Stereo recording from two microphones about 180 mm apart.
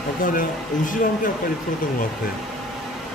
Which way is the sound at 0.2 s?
50° left (ahead or behind).